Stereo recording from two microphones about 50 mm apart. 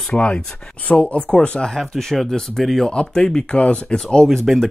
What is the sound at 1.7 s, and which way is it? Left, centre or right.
Speech, centre.